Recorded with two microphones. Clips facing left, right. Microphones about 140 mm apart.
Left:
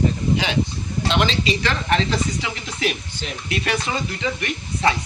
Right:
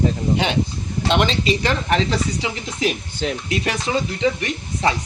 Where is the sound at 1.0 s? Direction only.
50° right (ahead or behind).